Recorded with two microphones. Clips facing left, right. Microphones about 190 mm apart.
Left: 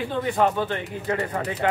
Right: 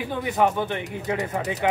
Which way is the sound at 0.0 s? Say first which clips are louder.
Even; 15° right (ahead or behind).